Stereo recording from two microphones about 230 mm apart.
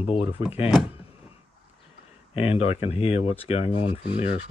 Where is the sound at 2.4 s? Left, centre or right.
Left.